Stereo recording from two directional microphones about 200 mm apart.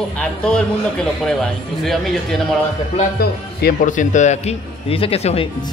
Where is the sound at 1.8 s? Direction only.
Centre (ahead or behind).